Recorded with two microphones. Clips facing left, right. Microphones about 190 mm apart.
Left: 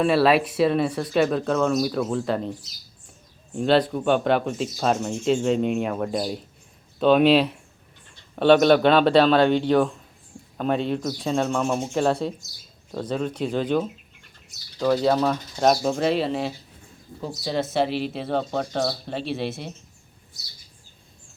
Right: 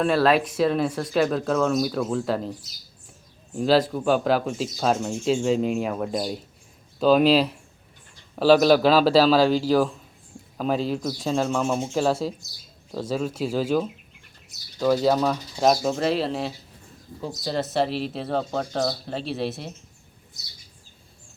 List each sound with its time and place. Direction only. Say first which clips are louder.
0.0 s speech: left 1 dB; 5° left (ahead or behind)